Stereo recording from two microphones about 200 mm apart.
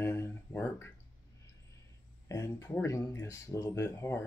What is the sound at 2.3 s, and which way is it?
Speech, 15° left (ahead or behind).